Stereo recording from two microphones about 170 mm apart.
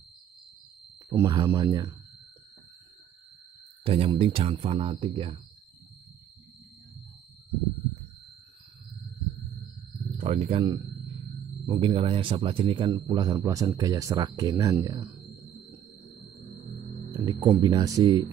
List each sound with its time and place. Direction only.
1.2 s speech: 25° right (ahead or behind)
3.8 s speech: 35° right (ahead or behind)
10.2 s speech: 35° right (ahead or behind)
11.6 s speech: 30° right (ahead or behind)
17.1 s speech: 20° right (ahead or behind)